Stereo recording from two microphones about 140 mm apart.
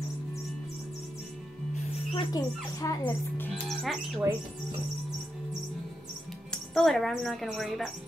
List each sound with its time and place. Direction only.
2.1 s speech: 25° left (ahead or behind)
3.6 s speech: centre (ahead or behind)
6.5 s speech: centre (ahead or behind)